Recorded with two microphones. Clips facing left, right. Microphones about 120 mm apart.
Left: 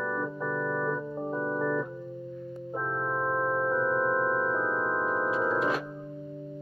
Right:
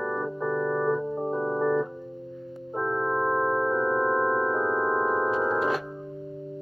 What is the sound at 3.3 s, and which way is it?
Music, 40° right (ahead or behind).